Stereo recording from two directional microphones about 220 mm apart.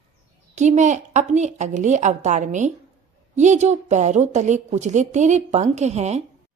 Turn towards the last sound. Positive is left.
turn(degrees=-30)  # may be behind; listen again after turning